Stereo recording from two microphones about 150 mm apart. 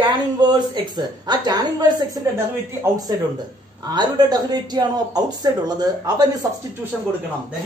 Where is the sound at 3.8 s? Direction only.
30° right (ahead or behind).